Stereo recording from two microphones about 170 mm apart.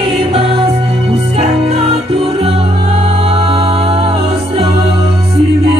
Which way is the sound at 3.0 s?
40° right (ahead or behind).